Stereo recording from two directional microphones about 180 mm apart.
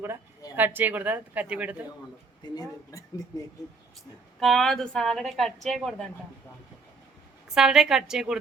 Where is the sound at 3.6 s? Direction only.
Centre (ahead or behind).